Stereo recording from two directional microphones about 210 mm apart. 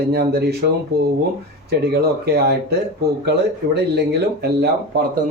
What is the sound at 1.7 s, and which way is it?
Speech, 50° right (ahead or behind).